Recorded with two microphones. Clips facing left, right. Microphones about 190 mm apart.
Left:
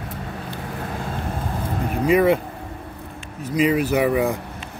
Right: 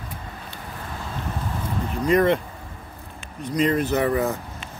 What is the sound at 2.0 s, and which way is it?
Speech, 5° left (ahead or behind).